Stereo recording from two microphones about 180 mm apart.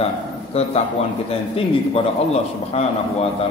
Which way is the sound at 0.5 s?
35° left (ahead or behind).